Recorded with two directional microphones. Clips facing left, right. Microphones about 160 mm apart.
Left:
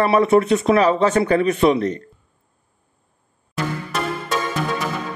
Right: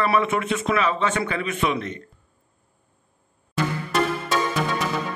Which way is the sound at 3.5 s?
Centre (ahead or behind).